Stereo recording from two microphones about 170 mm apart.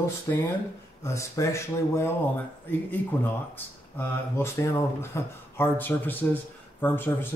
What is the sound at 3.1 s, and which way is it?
Speech, 10° left (ahead or behind).